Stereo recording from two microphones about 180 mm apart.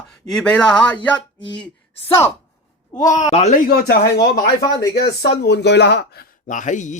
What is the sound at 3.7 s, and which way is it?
A man's voice, 60° left (ahead or behind).